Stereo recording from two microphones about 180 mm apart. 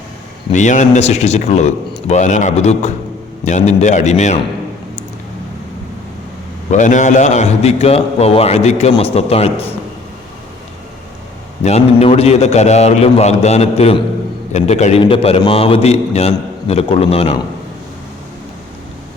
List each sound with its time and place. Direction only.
0.5 s a man's voice: 40° left (ahead or behind)
6.7 s a man's voice: 45° left (ahead or behind)
11.6 s a man's voice: 35° left (ahead or behind)